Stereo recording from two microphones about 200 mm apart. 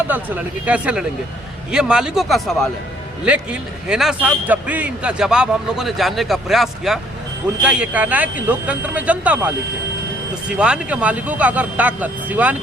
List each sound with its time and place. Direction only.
0.1 s a man's voice: 10° right (ahead or behind)
10.5 s speech: 5° right (ahead or behind)